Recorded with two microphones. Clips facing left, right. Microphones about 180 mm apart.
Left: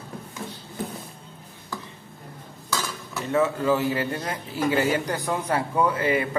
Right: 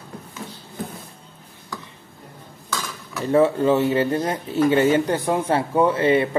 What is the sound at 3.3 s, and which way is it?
Speech, 30° right (ahead or behind).